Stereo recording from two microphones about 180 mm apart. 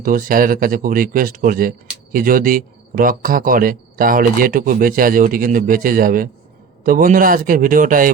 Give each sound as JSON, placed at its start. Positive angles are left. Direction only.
{"t": 0.0, "sound": "speech", "side_deg": -50}